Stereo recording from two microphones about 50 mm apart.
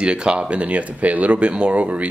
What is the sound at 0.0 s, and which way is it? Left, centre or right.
Speech, centre.